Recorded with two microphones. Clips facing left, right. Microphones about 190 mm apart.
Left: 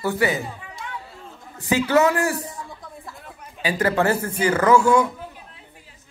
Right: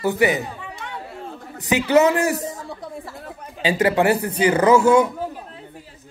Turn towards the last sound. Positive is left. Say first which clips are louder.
# right 2 dB
turn(degrees=-20)  # may be behind; listen again after turning